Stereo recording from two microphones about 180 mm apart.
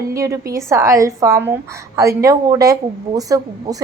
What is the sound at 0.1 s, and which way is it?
A woman's voice, 15° right (ahead or behind).